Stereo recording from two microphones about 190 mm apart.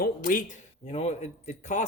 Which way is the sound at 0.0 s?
45° left (ahead or behind).